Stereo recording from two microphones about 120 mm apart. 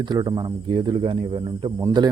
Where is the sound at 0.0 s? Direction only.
35° right (ahead or behind).